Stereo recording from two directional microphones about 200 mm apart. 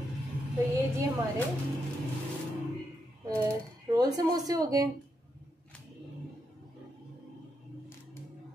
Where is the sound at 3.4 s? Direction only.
20° right (ahead or behind).